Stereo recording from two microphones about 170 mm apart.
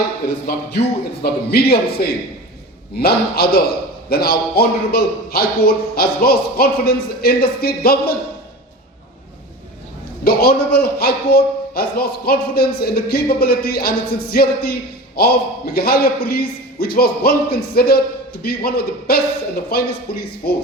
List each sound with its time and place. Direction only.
0.4 s a man's voice: 65° left (ahead or behind)
10.2 s a man's voice: 65° left (ahead or behind)